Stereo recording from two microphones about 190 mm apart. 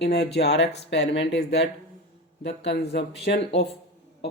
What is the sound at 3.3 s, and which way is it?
Speech, 55° left (ahead or behind).